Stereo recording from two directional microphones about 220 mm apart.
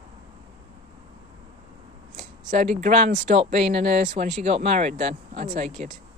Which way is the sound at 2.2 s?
35° right (ahead or behind).